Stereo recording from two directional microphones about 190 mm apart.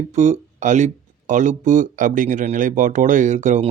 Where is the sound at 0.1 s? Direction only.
40° right (ahead or behind).